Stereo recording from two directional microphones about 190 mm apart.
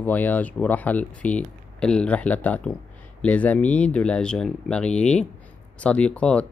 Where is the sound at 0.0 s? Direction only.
10° left (ahead or behind).